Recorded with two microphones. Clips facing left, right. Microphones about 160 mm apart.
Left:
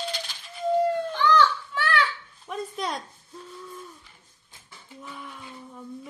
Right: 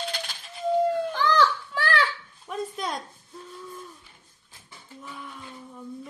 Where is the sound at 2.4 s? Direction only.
Centre (ahead or behind).